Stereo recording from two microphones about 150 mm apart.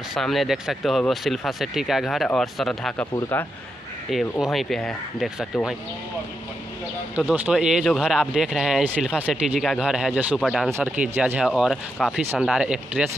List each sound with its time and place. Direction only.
0.1 s speech: centre (ahead or behind)
4.1 s speech: centre (ahead or behind)
7.2 s speech: 10° right (ahead or behind)